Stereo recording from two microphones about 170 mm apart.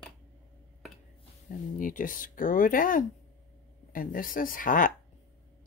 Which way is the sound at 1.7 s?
55° left (ahead or behind).